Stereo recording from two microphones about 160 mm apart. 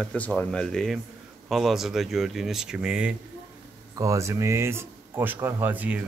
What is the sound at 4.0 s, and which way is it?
Speech, 20° right (ahead or behind).